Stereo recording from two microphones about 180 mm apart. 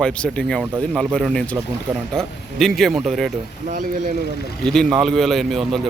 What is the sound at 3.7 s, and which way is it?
Speech, 50° right (ahead or behind).